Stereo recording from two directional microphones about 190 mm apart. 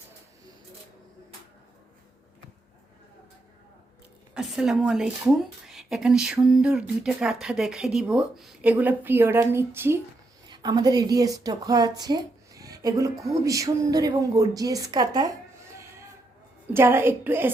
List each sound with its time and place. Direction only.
4.4 s a woman's voice: 5° right (ahead or behind); by 15.4 s 20° right (ahead or behind)
16.7 s a woman's voice: 15° right (ahead or behind)